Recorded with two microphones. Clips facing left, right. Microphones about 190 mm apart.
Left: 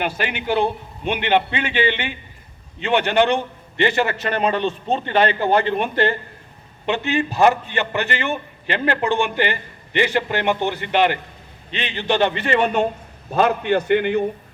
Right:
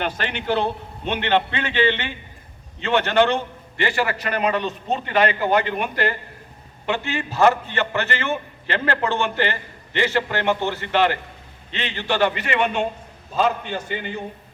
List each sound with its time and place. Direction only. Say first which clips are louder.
0.0 s a man's voice: left 2 dB; 10° left (ahead or behind); by 12.9 s 40° left (ahead or behind)
13.3 s a man's voice: left 5 dB; 65° left (ahead or behind)